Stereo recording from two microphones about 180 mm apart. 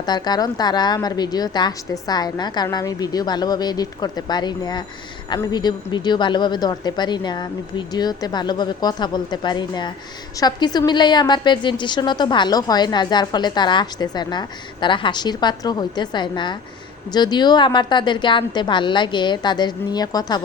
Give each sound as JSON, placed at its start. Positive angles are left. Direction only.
{"t": 0.0, "sound": "a woman's voice", "side_deg": 25}